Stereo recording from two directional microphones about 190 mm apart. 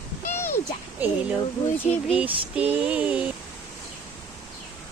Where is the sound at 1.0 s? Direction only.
10° right (ahead or behind).